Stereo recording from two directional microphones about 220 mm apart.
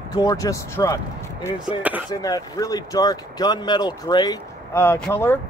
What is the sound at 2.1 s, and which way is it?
Speech, 15° left (ahead or behind).